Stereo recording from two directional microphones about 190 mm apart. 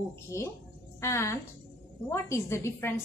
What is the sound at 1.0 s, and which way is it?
A woman's voice, 15° left (ahead or behind).